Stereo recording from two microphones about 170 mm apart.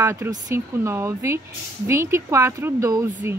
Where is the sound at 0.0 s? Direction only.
15° right (ahead or behind).